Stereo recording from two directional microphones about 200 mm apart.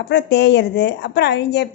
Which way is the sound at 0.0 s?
60° left (ahead or behind).